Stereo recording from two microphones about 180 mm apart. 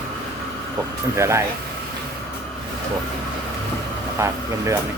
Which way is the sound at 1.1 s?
15° right (ahead or behind).